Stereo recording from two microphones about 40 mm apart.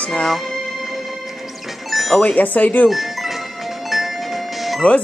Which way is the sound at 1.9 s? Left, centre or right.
Centre.